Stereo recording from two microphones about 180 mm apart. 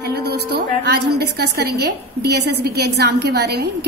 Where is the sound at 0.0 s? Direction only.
65° right (ahead or behind).